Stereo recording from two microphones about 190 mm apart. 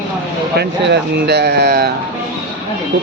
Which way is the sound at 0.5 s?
60° right (ahead or behind).